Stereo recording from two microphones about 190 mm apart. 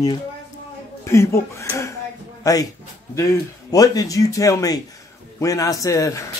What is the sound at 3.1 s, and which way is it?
Speech, 15° left (ahead or behind).